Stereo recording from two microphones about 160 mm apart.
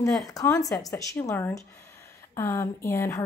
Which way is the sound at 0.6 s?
20° left (ahead or behind).